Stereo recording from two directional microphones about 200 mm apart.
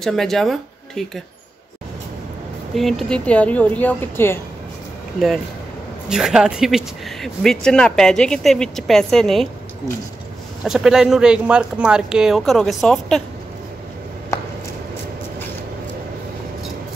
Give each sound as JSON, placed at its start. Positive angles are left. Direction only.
{"t": 0.0, "sound": "speech", "side_deg": 0}
{"t": 2.7, "sound": "speech", "side_deg": 0}
{"t": 6.0, "sound": "speech", "side_deg": 0}
{"t": 10.6, "sound": "speech", "side_deg": 0}